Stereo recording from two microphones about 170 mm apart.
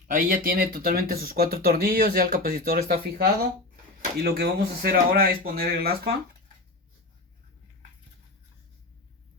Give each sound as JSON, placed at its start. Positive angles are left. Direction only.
{"t": 0.1, "sound": "speech", "side_deg": -55}